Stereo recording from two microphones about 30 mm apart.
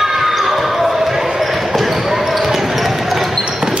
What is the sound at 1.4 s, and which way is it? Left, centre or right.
Basketball bounce, centre.